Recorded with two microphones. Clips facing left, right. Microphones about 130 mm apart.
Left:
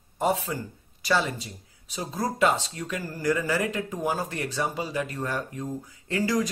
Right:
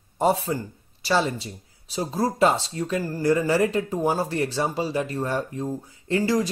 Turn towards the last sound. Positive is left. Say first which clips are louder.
# right 3 dB
turn(degrees=-30)  # may be behind; listen again after turning